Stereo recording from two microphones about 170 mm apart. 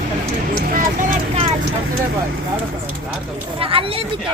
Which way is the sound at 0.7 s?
50° right (ahead or behind).